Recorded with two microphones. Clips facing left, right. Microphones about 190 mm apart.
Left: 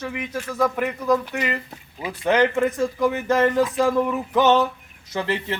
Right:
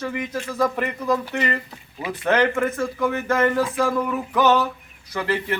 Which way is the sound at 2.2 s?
15° left (ahead or behind).